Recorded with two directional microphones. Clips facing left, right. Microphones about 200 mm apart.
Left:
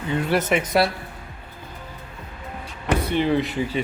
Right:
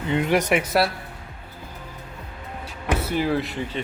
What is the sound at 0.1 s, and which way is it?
Speech, 15° right (ahead or behind).